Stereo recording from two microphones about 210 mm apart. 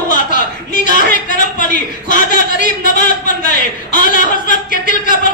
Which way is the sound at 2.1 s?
40° left (ahead or behind).